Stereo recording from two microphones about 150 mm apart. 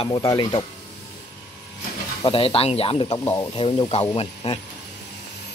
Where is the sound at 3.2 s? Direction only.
25° left (ahead or behind); by 4.6 s 40° left (ahead or behind).